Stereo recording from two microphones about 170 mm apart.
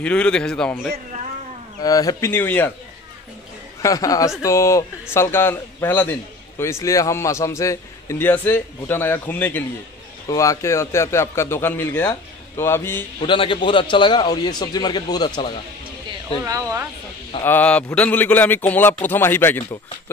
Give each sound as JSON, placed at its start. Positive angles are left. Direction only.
{"t": 0.0, "sound": "a man's voice", "side_deg": 5}
{"t": 1.8, "sound": "a man's voice", "side_deg": 20}
{"t": 3.8, "sound": "a man's voice", "side_deg": 20}
{"t": 13.2, "sound": "a man's voice", "side_deg": 30}
{"t": 16.4, "sound": "speech", "side_deg": -20}
{"t": 17.4, "sound": "a man's voice", "side_deg": 10}